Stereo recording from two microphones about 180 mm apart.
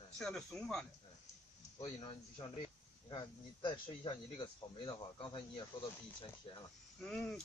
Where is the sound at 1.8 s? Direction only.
25° left (ahead or behind).